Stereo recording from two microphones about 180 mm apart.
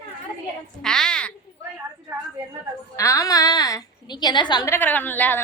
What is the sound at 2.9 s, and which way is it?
A woman's voice, 15° left (ahead or behind).